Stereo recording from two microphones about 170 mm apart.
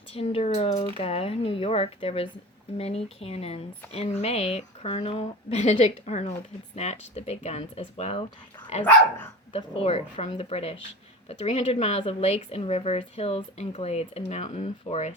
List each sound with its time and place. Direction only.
0.1 s speech: 35° left (ahead or behind)
8.8 s dog: 10° left (ahead or behind)
9.5 s speech: 35° left (ahead or behind)